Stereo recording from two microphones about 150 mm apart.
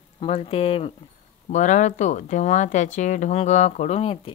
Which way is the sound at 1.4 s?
55° left (ahead or behind).